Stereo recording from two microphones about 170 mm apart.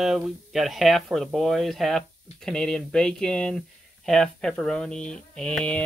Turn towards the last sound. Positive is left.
turn(degrees=5)  # may be behind; listen again after turning